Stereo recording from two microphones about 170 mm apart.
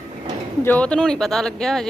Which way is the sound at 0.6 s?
10° left (ahead or behind).